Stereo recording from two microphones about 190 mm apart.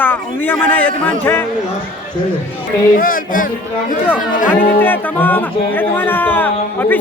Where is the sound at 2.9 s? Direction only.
45° left (ahead or behind).